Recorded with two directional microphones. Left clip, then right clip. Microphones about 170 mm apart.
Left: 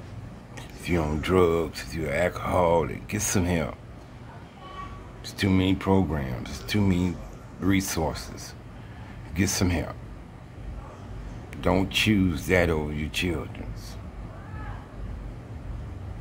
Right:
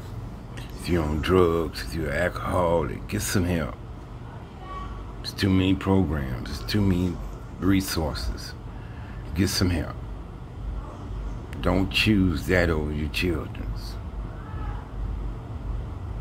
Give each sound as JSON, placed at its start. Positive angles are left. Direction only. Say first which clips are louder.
{"t": 0.8, "sound": "speech", "louder": "right 1 dB", "side_deg": 15}
{"t": 5.2, "sound": "speech", "louder": "right 1 dB", "side_deg": 15}
{"t": 11.5, "sound": "speech", "louder": "even", "side_deg": 15}